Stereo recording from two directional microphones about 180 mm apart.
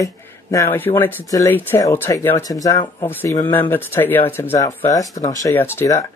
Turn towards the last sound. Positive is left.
turn(degrees=15)  # may be behind; listen again after turning